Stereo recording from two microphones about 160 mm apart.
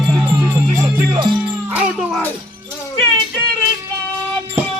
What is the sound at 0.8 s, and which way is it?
Music, 30° right (ahead or behind).